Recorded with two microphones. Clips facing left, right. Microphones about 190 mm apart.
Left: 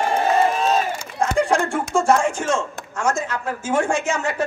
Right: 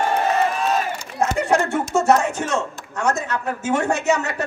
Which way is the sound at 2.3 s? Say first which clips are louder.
Left 1 dB; 65° right (ahead or behind).